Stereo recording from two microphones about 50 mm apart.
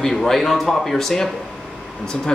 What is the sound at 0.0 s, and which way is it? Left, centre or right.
Speech, centre.